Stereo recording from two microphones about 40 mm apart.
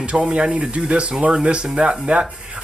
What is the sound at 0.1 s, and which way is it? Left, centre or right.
Speech, right.